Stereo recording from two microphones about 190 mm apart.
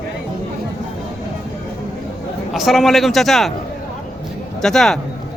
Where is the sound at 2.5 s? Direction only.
Centre (ahead or behind).